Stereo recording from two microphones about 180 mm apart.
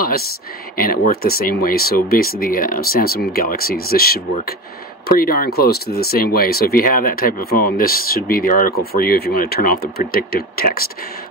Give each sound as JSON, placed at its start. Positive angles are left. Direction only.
{"t": 0.7, "sound": "speech", "side_deg": 55}